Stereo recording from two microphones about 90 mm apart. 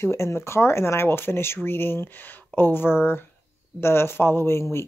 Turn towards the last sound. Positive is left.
turn(degrees=30)  # may be behind; listen again after turning